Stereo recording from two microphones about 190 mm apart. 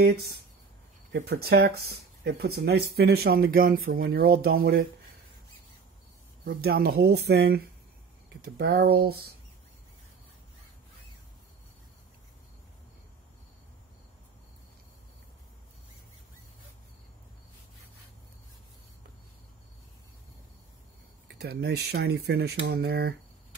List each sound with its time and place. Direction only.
1.1 s speech: 60° right (ahead or behind)
6.4 s speech: 55° right (ahead or behind)
21.3 s speech: 60° right (ahead or behind)